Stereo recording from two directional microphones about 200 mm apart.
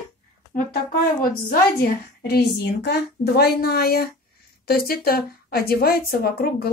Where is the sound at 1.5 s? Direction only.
50° left (ahead or behind).